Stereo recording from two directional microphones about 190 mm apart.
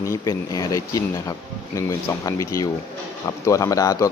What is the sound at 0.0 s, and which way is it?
Speech, 15° left (ahead or behind).